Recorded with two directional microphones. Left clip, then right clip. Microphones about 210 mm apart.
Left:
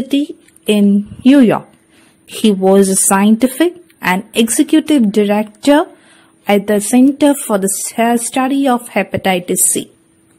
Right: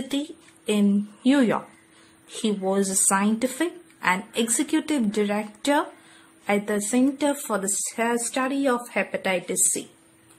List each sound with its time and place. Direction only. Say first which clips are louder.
0.7 s a woman's voice: left 11 dB; 30° left (ahead or behind)